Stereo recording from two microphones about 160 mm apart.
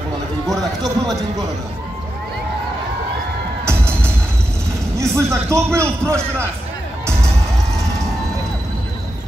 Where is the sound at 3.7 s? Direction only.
15° right (ahead or behind).